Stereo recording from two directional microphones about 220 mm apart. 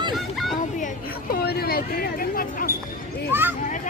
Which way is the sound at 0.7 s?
40° left (ahead or behind).